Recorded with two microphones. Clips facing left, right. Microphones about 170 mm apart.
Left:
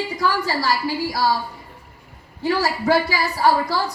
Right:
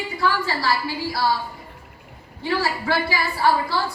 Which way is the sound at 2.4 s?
40° left (ahead or behind).